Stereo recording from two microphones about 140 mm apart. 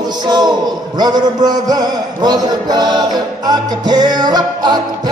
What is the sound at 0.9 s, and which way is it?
Speech, 30° right (ahead or behind).